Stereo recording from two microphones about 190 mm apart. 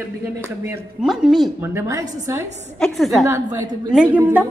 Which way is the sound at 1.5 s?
15° right (ahead or behind).